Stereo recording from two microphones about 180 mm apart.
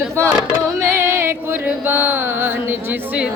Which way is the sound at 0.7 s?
15° right (ahead or behind).